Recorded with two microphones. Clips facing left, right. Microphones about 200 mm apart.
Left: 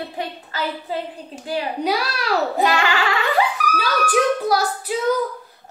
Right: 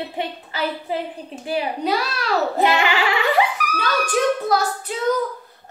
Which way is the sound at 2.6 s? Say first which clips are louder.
Right 1 dB; 20° right (ahead or behind).